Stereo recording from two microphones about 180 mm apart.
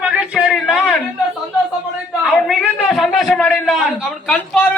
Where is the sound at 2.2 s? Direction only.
Centre (ahead or behind).